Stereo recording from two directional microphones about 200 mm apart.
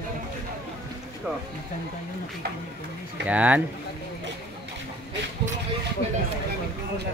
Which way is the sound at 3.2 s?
5° right (ahead or behind).